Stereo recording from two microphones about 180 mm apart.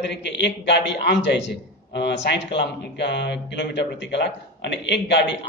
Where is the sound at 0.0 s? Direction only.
75° left (ahead or behind).